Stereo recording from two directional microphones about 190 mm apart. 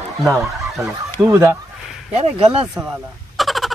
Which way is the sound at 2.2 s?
30° right (ahead or behind).